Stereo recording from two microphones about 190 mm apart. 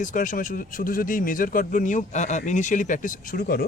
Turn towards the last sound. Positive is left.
turn(degrees=50)  # may be behind; listen again after turning